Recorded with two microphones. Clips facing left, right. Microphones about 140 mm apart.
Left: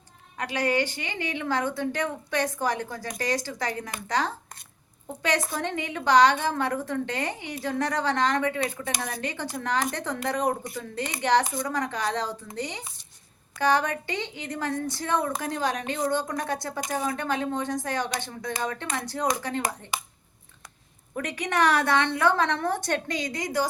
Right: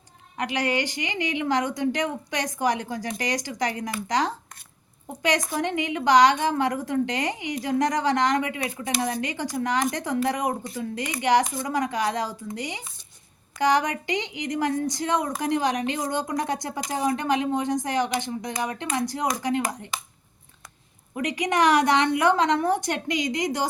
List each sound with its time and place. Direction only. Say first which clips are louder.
0.3 s a woman's voice: even; 20° right (ahead or behind)
5.2 s a woman's voice: right 3 dB; 15° right (ahead or behind)
21.2 s a woman's voice: right 3 dB; 15° right (ahead or behind)